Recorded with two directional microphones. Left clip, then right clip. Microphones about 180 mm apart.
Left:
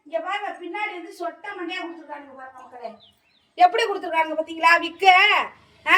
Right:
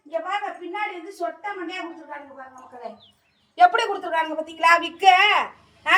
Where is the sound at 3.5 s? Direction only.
Centre (ahead or behind).